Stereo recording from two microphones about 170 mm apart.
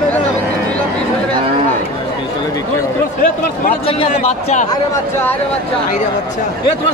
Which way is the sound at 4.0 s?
40° left (ahead or behind).